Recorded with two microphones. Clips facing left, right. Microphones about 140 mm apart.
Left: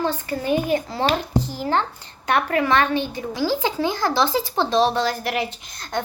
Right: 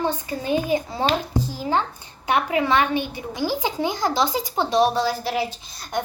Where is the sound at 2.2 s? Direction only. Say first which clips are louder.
Left 1 dB; 15° right (ahead or behind).